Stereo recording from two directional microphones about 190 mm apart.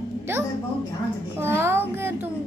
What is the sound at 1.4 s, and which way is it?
Speech, 10° right (ahead or behind).